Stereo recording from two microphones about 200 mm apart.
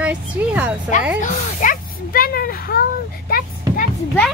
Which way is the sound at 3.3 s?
45° left (ahead or behind).